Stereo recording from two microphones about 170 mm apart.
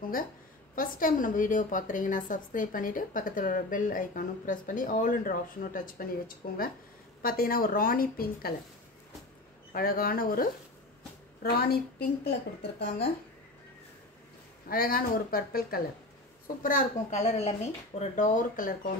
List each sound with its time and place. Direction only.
0.7 s a woman's voice: 55° left (ahead or behind)
9.7 s a woman's voice: 60° left (ahead or behind)
14.7 s a woman's voice: 60° left (ahead or behind)
16.6 s a woman's voice: 45° left (ahead or behind)